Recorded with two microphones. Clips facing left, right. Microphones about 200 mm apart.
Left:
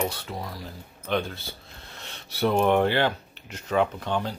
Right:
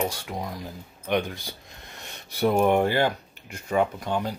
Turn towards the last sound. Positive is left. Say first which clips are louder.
# even
turn(degrees=-10)  # may be behind; listen again after turning